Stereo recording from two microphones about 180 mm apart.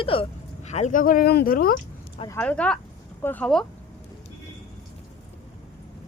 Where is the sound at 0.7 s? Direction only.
40° left (ahead or behind).